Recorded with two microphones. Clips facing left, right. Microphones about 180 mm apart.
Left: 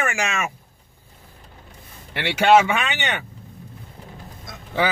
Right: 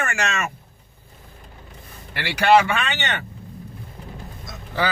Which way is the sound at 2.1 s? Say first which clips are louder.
Left 1 dB; 25° left (ahead or behind).